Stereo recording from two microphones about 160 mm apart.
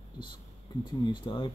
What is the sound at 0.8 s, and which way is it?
Speech, 30° left (ahead or behind).